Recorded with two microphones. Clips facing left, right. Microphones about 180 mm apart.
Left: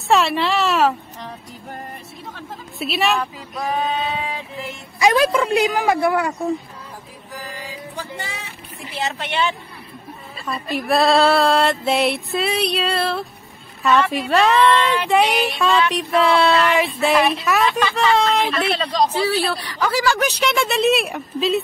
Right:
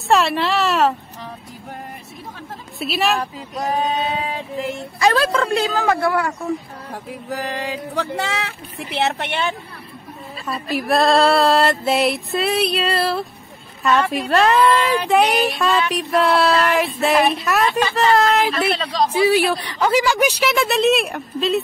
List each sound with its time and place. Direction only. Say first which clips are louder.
0.1 s speech: even; centre (ahead or behind)
2.8 s speech: even; centre (ahead or behind)
3.2 s female singing: right 1 dB; 35° right (ahead or behind)
4.9 s speech: left 2 dB; 15° left (ahead or behind)
6.9 s a sound: right 11 dB; 80° right; by 9.6 s 55° right (ahead or behind)
10.4 s speech: right 1 dB; centre (ahead or behind)
19.2 s a woman's voice: right 5 dB; 15° right (ahead or behind); by 21.6 s centre (ahead or behind)